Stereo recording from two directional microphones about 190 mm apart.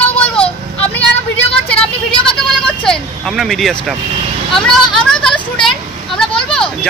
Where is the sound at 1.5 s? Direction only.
5° left (ahead or behind).